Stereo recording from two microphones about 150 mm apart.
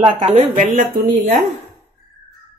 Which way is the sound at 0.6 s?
60° right (ahead or behind).